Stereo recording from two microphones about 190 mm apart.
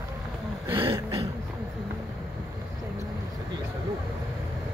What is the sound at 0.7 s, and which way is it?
Throat clearing, 25° right (ahead or behind).